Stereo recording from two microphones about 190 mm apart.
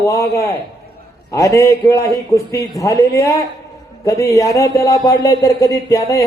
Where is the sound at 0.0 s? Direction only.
15° left (ahead or behind).